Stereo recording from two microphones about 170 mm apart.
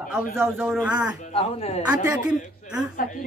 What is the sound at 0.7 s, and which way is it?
Speech, 5° right (ahead or behind).